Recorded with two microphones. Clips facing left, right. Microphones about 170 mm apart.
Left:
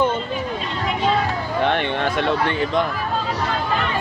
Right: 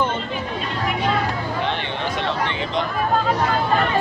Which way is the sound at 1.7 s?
55° left (ahead or behind).